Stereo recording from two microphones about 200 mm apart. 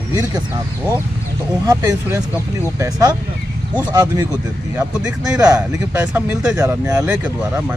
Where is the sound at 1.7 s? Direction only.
15° right (ahead or behind).